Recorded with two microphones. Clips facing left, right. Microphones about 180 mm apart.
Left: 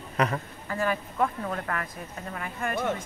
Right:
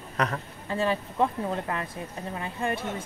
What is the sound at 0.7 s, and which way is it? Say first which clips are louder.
Speech: right 2 dB; 25° right (ahead or behind).